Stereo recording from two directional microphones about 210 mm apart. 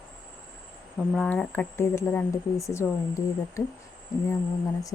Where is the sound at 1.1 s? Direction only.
5° left (ahead or behind).